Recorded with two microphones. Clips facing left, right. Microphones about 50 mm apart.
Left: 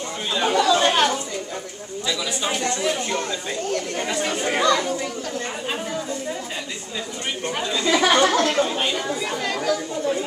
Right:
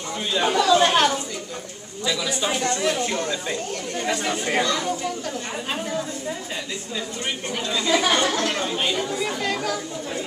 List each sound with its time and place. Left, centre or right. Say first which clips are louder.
0.3 s chatter: even; centre
2.2 s speech: right 1 dB; centre
5.7 s speech: right 2 dB; centre
7.9 s speech: left 3 dB; left
8.5 s speech: left 2 dB; centre